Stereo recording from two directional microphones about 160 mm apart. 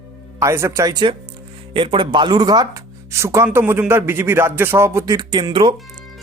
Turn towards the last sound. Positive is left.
turn(degrees=-30)  # may be behind; listen again after turning